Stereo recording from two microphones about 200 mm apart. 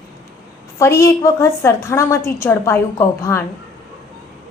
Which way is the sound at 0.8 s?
15° left (ahead or behind).